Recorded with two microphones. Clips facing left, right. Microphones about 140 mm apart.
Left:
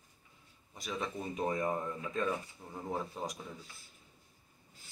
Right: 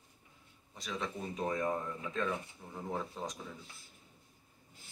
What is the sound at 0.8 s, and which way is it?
Speech, 5° left (ahead or behind).